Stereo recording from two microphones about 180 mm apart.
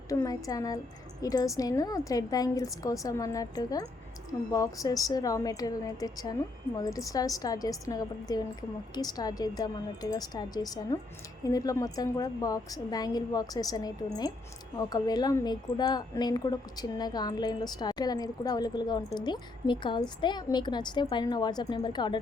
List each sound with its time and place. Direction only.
0.1 s a woman's voice: 20° left (ahead or behind)